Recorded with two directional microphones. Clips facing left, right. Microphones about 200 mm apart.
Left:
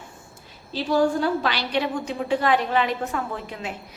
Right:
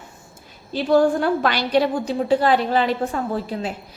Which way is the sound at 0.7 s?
55° right (ahead or behind).